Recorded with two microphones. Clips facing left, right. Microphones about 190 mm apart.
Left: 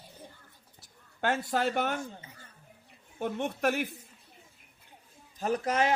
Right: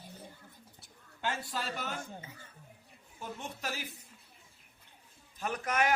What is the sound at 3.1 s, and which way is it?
Speech, 65° left (ahead or behind).